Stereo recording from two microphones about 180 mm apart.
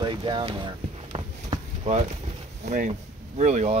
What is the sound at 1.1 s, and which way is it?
Walk, 35° right (ahead or behind).